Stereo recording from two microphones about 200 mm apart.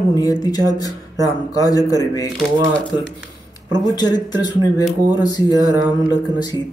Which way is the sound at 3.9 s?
20° left (ahead or behind).